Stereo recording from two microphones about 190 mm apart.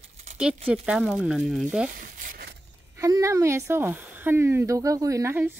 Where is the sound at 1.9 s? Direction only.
45° right (ahead or behind).